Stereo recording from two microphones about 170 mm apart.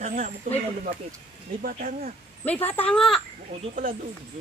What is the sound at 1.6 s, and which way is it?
Speech, 50° right (ahead or behind).